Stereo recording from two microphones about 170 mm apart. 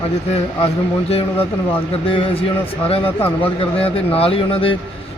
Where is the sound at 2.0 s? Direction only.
35° left (ahead or behind).